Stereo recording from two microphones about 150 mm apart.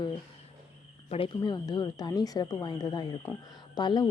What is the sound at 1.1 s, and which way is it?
Speech, 35° left (ahead or behind).